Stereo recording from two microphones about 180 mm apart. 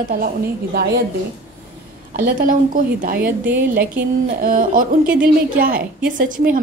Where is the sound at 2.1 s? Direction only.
50° right (ahead or behind).